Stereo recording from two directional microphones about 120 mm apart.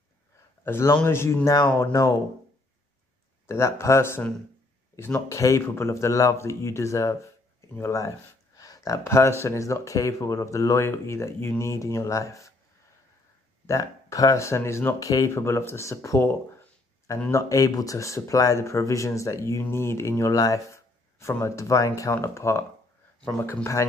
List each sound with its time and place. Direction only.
0.7 s speech: 20° left (ahead or behind)
3.4 s speech: 20° left (ahead or behind)
8.5 s a sound: 30° left (ahead or behind)
9.4 s speech: 25° left (ahead or behind)
13.7 s speech: 25° left (ahead or behind)